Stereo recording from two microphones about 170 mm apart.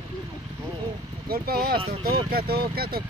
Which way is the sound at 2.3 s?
65° right (ahead or behind).